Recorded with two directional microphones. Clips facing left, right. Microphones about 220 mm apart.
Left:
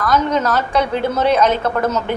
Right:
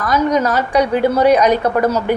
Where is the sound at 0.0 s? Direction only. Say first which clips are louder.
Right 2 dB; 10° right (ahead or behind).